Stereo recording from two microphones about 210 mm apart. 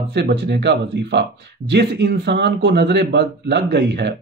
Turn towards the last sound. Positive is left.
turn(degrees=-55)  # may be behind; listen again after turning